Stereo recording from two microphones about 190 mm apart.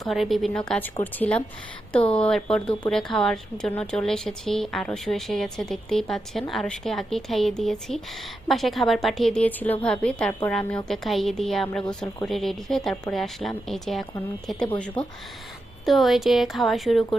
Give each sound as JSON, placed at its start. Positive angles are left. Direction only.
{"t": 0.0, "sound": "speech", "side_deg": 0}